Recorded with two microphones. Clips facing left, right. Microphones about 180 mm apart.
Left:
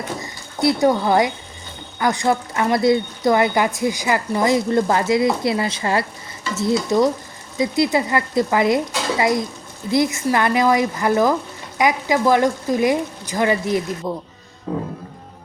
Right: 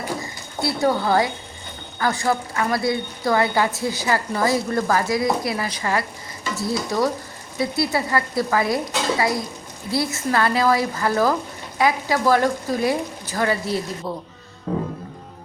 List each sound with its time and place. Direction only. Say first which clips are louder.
0.6 s a woman's voice: left 4 dB; 20° left (ahead or behind)